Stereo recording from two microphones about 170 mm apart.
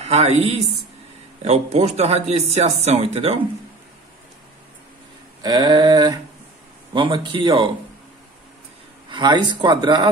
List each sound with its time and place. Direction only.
0.0 s speech: 40° right (ahead or behind)
5.4 s speech: 25° right (ahead or behind)
9.1 s speech: 25° right (ahead or behind)